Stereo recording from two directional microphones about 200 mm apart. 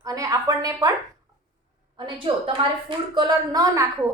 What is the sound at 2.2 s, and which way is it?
A woman's voice, 25° right (ahead or behind).